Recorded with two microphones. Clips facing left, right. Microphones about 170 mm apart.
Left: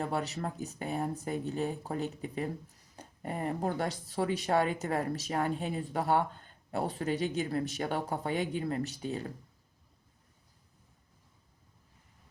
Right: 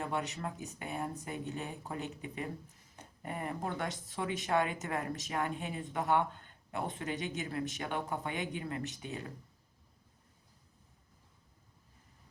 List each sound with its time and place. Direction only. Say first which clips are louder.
0.0 s speech: left 3 dB; 35° left (ahead or behind)